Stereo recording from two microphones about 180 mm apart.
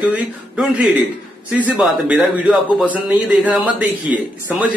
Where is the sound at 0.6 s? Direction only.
10° right (ahead or behind).